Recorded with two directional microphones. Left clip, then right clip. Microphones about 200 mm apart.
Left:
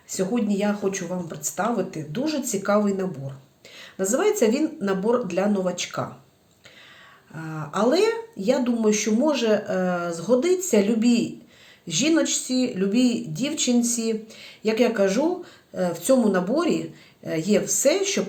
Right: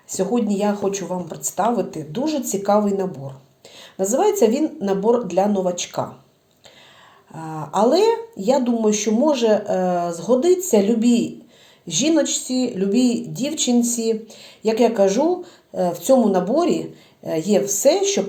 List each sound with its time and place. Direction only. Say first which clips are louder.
0.1 s speech: right 4 dB; centre (ahead or behind)
7.3 s speech: right 6 dB; centre (ahead or behind)
15.9 s speech: right 3 dB; 35° left (ahead or behind)
16.3 s speech: right 4 dB; 5° left (ahead or behind)